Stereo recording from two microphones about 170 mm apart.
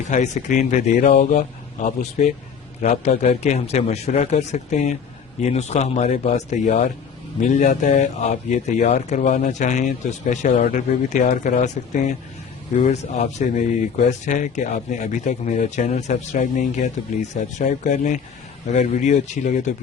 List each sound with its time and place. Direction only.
0.1 s speech: 45° left (ahead or behind)